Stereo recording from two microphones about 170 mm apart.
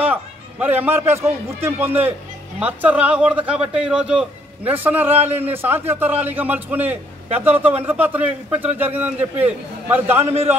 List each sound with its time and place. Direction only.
0.0 s a man's voice: 10° right (ahead or behind)
5.1 s a man's voice: 40° right (ahead or behind)
5.4 s a man's voice: 10° right (ahead or behind)